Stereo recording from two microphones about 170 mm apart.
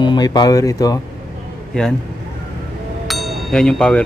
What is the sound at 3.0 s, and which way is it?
Music, centre (ahead or behind).